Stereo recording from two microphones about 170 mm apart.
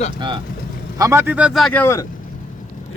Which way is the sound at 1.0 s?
15° right (ahead or behind).